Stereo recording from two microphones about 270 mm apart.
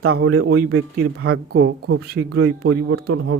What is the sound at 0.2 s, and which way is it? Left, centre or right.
Speech, right.